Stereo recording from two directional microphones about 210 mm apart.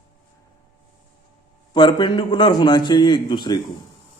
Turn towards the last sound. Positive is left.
turn(degrees=20)  # may be behind; listen again after turning